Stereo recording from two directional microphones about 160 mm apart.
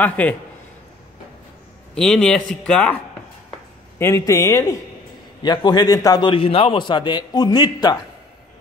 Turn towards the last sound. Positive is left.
turn(degrees=25)  # may be behind; listen again after turning